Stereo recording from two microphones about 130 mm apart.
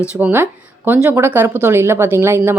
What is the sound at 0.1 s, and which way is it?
A woman's voice, 15° right (ahead or behind).